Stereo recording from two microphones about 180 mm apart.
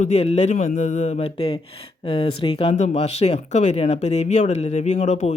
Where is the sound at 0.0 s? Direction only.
35° left (ahead or behind).